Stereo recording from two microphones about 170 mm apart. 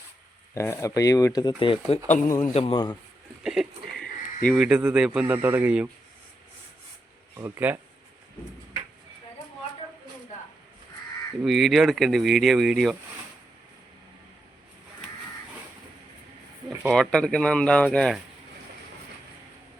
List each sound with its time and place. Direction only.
0.5 s a man's voice: 15° left (ahead or behind)
3.4 s a sound: centre (ahead or behind)
4.4 s speech: centre (ahead or behind)
7.3 s speech: 15° right (ahead or behind)
11.4 s speech: centre (ahead or behind)
16.9 s speech: 5° left (ahead or behind)